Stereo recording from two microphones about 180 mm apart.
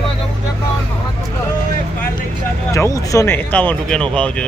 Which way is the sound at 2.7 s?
15° left (ahead or behind).